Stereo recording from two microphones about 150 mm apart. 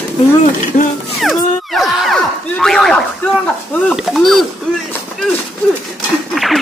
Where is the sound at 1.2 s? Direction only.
Centre (ahead or behind).